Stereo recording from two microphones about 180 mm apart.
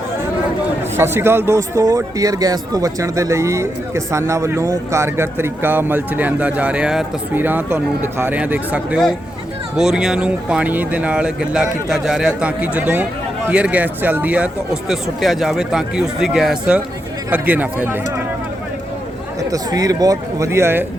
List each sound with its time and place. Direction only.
0.9 s speech: 15° right (ahead or behind)
19.4 s a man's voice: 20° right (ahead or behind)